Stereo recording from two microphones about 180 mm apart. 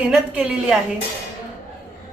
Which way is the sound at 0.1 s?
5° right (ahead or behind).